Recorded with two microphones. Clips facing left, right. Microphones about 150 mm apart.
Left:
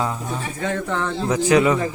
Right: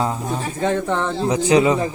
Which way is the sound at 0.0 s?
25° right (ahead or behind).